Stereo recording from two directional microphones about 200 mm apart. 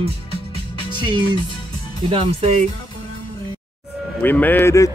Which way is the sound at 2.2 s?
30° right (ahead or behind).